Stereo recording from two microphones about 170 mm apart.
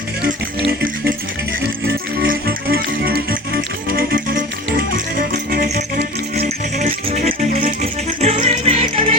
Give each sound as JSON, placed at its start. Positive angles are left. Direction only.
{"t": 1.9, "sound": "music", "side_deg": -55}
{"t": 5.5, "sound": "music", "side_deg": -55}
{"t": 6.7, "sound": "music", "side_deg": -45}
{"t": 8.2, "sound": "music", "side_deg": -40}